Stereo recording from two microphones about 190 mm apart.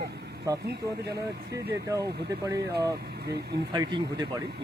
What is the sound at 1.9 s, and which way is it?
Speech, 15° right (ahead or behind).